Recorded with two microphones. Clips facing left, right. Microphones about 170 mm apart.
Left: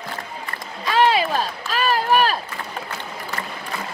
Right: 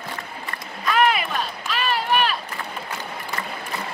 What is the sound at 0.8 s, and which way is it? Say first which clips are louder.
Run: left 2 dB; 30° left (ahead or behind).